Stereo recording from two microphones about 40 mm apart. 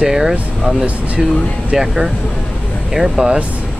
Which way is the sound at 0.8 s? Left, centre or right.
Right.